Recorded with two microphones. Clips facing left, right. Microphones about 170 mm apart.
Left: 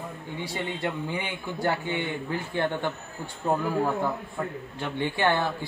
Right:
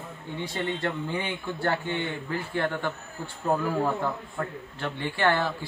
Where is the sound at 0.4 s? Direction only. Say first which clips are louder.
Right 1 dB; 10° left (ahead or behind).